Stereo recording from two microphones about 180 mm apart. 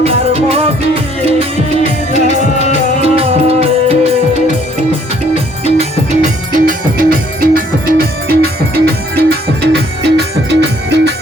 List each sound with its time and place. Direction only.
0.0 s music: 35° right (ahead or behind)
2.2 s music: 40° left (ahead or behind)
3.0 s music: 35° right (ahead or behind)
6.1 s music: 50° right (ahead or behind); by 11.1 s 70° right (ahead or behind)